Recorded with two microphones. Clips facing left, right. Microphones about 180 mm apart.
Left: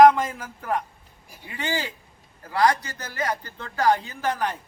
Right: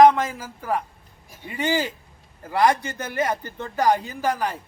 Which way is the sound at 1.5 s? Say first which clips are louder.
Right 5 dB; 15° right (ahead or behind).